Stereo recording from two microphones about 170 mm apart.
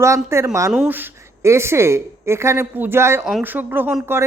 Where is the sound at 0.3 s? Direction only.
15° right (ahead or behind).